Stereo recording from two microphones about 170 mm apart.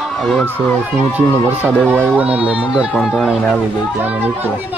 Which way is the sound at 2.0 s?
10° right (ahead or behind).